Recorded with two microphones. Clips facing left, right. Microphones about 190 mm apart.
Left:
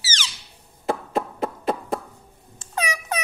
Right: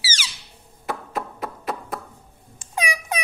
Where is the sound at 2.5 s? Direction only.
15° right (ahead or behind).